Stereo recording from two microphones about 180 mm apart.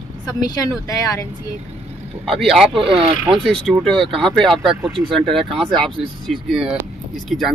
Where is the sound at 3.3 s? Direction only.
5° left (ahead or behind).